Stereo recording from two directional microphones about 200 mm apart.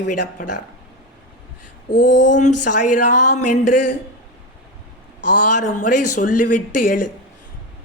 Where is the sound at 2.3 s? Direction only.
40° left (ahead or behind).